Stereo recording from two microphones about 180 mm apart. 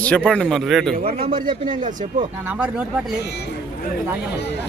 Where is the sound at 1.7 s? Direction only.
45° right (ahead or behind).